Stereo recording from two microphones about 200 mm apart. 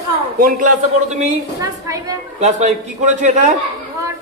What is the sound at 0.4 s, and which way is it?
Speech, 45° right (ahead or behind).